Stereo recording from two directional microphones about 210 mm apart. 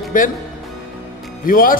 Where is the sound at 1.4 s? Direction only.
40° left (ahead or behind).